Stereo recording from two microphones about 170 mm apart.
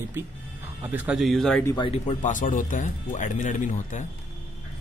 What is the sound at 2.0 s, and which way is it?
Speech, 50° left (ahead or behind).